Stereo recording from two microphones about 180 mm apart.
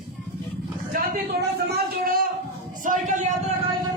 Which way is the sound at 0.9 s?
55° right (ahead or behind).